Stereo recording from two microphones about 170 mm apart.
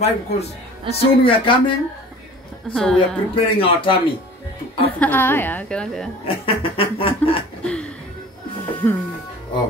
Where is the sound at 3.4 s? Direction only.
30° left (ahead or behind).